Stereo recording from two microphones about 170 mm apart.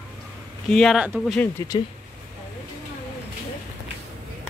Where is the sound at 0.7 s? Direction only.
Centre (ahead or behind).